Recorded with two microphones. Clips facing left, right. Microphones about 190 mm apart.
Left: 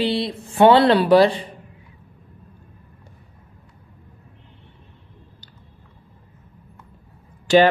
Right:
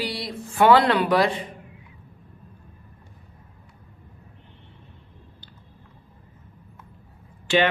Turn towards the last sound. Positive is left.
turn(degrees=40)  # may be behind; listen again after turning